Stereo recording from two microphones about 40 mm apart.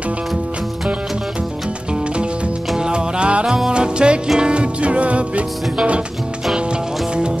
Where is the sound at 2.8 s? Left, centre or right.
Right.